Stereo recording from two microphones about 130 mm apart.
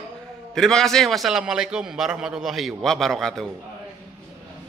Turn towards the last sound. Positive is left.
turn(degrees=0)  # may be behind; listen again after turning